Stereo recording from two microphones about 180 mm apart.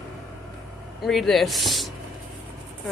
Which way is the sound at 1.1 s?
Centre (ahead or behind).